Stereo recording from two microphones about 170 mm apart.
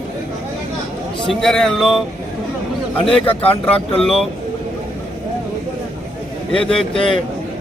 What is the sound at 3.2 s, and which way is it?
Speech, 35° left (ahead or behind).